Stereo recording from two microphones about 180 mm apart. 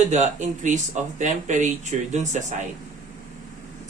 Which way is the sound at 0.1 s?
40° right (ahead or behind).